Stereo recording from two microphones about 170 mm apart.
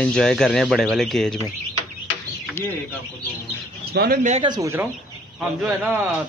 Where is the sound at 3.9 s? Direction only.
70° right (ahead or behind).